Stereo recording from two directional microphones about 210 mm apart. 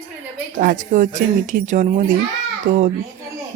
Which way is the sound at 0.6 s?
40° right (ahead or behind).